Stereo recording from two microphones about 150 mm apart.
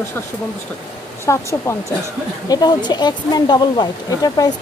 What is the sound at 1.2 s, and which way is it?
Speech, 20° left (ahead or behind).